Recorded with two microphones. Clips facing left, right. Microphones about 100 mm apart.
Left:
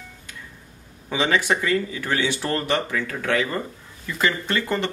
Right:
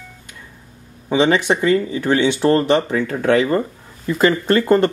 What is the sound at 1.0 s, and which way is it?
Speech, 25° right (ahead or behind).